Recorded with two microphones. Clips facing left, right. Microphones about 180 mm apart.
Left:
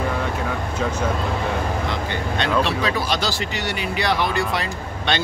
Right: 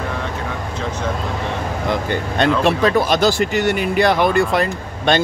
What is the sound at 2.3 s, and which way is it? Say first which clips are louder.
Speech: right 5 dB; 50° right (ahead or behind).